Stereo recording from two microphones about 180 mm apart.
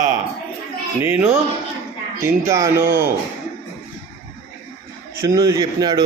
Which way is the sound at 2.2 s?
15° right (ahead or behind).